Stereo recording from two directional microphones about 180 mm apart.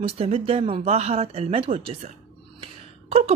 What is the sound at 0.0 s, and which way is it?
Speech, 35° right (ahead or behind).